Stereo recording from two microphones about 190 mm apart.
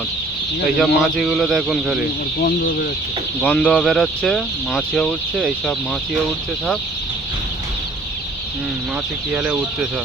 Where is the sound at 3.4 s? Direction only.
5° left (ahead or behind).